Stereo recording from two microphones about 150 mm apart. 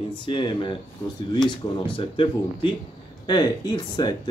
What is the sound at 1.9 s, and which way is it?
Speech, 35° left (ahead or behind).